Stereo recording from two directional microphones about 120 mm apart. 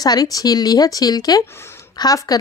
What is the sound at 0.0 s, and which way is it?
A woman's voice, 35° left (ahead or behind).